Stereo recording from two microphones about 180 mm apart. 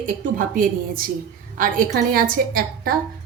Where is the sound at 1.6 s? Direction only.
50° right (ahead or behind).